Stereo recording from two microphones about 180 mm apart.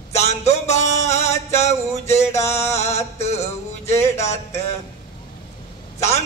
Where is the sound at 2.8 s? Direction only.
35° left (ahead or behind).